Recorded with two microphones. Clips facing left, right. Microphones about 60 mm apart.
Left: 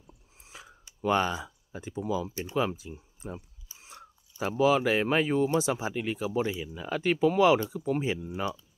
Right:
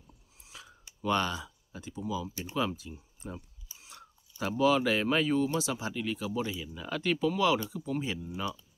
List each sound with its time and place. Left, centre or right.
0.4 s a sound: left
2.0 s speech: left
2.2 s speech: left